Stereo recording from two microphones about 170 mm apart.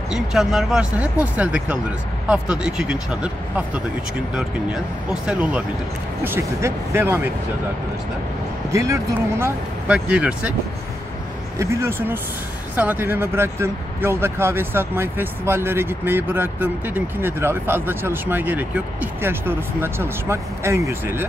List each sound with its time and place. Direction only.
0.1 s speech: centre (ahead or behind)
8.7 s speech: 15° right (ahead or behind)
9.9 s speech: 5° right (ahead or behind)
11.5 s speech: 15° right (ahead or behind)